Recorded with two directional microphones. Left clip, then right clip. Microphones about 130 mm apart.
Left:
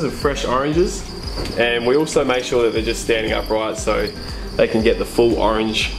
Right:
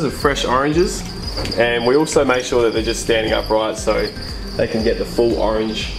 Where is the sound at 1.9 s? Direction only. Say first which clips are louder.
Right 2 dB; centre (ahead or behind).